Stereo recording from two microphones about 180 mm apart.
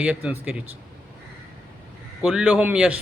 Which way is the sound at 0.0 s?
5° right (ahead or behind).